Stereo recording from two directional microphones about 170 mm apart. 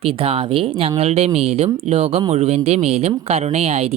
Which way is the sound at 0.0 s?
35° right (ahead or behind).